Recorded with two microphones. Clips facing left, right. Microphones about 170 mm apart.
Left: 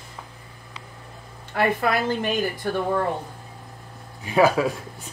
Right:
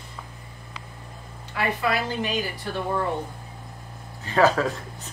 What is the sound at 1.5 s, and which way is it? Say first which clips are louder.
Speech: left 3 dB; 50° left (ahead or behind).